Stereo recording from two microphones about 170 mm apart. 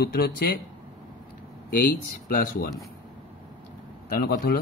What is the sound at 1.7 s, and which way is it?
Speech, 60° left (ahead or behind).